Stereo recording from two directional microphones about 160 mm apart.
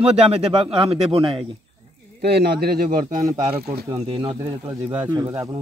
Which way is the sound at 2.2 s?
90° right.